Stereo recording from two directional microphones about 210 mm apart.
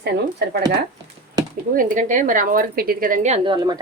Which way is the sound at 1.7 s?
40° right (ahead or behind).